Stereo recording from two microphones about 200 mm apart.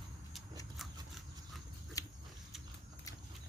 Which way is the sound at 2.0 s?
15° left (ahead or behind).